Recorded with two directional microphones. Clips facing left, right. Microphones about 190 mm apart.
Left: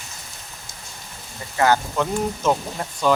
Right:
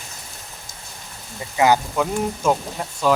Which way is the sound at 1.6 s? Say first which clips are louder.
Right 2 dB; 10° right (ahead or behind).